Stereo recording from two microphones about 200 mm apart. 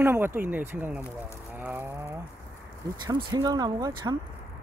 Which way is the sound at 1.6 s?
10° right (ahead or behind).